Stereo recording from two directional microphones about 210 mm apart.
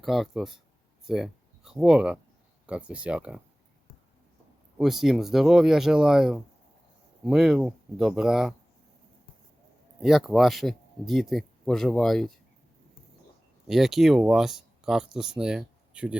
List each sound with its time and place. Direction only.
0.0 s speech: centre (ahead or behind)
4.8 s speech: centre (ahead or behind)
10.0 s speech: centre (ahead or behind)
13.7 s speech: centre (ahead or behind)